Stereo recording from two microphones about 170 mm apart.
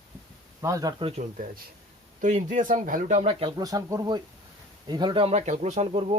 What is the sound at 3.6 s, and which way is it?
Speech, 20° right (ahead or behind).